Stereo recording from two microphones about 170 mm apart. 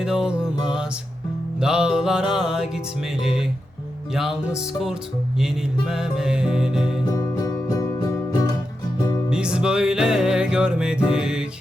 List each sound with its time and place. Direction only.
0.0 s music: 5° right (ahead or behind)
7.0 s music: 20° left (ahead or behind)
9.3 s music: 5° right (ahead or behind)